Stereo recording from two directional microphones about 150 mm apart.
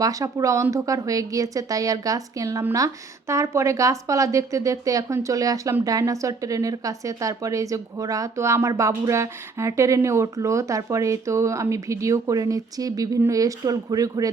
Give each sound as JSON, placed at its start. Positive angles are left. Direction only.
{"t": 0.0, "sound": "a woman's voice", "side_deg": -25}